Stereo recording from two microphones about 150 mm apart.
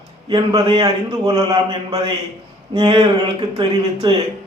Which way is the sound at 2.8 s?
35° right (ahead or behind).